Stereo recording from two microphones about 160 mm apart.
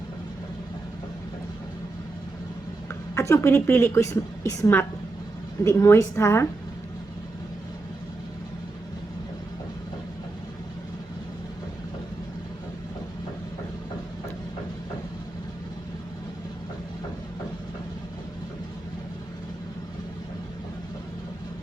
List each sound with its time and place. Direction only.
3.2 s a woman's voice: 20° left (ahead or behind)